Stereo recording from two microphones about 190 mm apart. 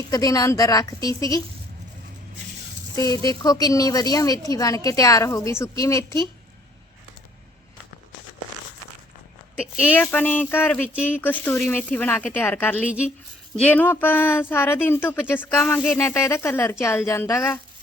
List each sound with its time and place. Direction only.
0.1 s speech: 20° left (ahead or behind)
2.9 s speech: 15° left (ahead or behind)
10.0 s speech: 10° left (ahead or behind)
10.8 s speech: 5° right (ahead or behind)
11.2 s speech: 10° left (ahead or behind)